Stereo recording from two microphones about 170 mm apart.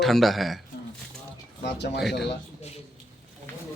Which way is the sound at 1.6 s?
90° left.